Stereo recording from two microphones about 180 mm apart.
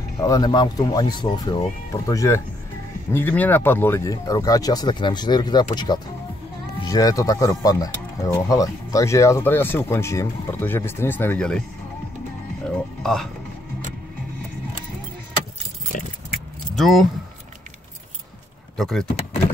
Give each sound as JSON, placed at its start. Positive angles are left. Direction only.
{"t": 0.2, "sound": "speech", "side_deg": 20}
{"t": 6.8, "sound": "speech", "side_deg": 20}
{"t": 12.6, "sound": "music", "side_deg": 0}
{"t": 15.9, "sound": "keys jangling", "side_deg": 45}
{"t": 16.7, "sound": "speech", "side_deg": 0}
{"t": 18.8, "sound": "speech", "side_deg": 0}